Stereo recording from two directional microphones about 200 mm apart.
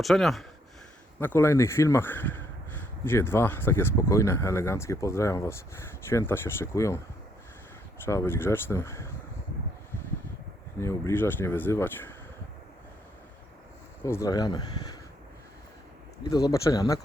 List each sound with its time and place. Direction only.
0.0 s speech: centre (ahead or behind)
8.0 s speech: 15° left (ahead or behind)
10.8 s speech: 15° left (ahead or behind)
14.0 s speech: 15° left (ahead or behind)
16.5 s speech: 15° left (ahead or behind)